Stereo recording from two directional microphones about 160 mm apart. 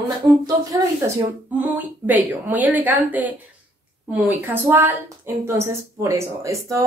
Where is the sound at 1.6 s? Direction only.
10° right (ahead or behind).